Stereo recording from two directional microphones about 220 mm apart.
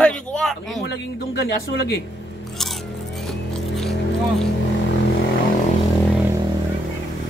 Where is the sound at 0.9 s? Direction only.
50° left (ahead or behind).